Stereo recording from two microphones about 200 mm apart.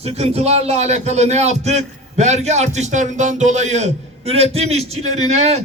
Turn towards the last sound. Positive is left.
turn(degrees=-35)  # may be behind; listen again after turning